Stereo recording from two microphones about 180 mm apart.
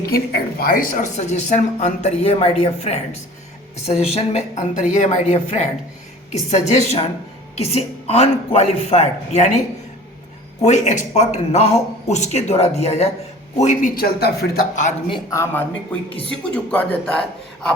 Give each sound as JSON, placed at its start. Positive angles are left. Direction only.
{"t": 0.1, "sound": "speech", "side_deg": 60}
{"t": 10.6, "sound": "speech", "side_deg": 40}
{"t": 15.1, "sound": "a woman's voice", "side_deg": 15}